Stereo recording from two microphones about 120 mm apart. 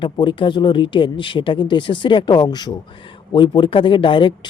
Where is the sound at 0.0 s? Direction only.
45° left (ahead or behind).